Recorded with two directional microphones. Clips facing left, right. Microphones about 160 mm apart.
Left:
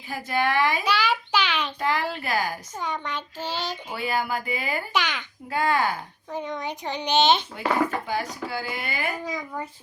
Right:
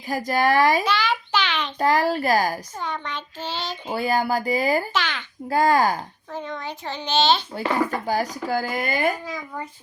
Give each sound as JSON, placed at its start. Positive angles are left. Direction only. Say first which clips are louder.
{"t": 0.1, "sound": "speech", "louder": "right 4 dB", "side_deg": -40}
{"t": 0.9, "sound": "a sound", "louder": "right 1 dB", "side_deg": 10}
{"t": 1.8, "sound": "speech", "louder": "right 9 dB", "side_deg": -40}
{"t": 2.7, "sound": "a child's voice", "louder": "even", "side_deg": 10}
{"t": 3.8, "sound": "speech", "louder": "right 7 dB", "side_deg": -35}
{"t": 4.9, "sound": "a child's voice", "louder": "even", "side_deg": 15}
{"t": 5.5, "sound": "speech", "louder": "right 5 dB", "side_deg": -40}
{"t": 6.3, "sound": "a child's voice", "louder": "left 1 dB", "side_deg": 15}
{"t": 8.0, "sound": "speech", "louder": "right 5 dB", "side_deg": -40}
{"t": 9.2, "sound": "a child's voice", "louder": "left 1 dB", "side_deg": 0}